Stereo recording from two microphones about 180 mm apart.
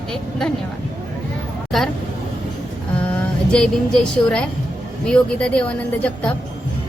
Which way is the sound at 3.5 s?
5° left (ahead or behind).